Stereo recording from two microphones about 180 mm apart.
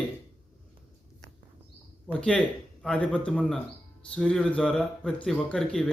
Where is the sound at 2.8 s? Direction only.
5° left (ahead or behind).